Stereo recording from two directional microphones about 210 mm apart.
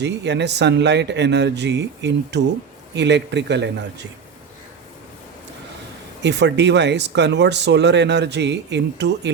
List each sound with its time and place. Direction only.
0.0 s speech: 55° right (ahead or behind)
6.2 s speech: 55° right (ahead or behind)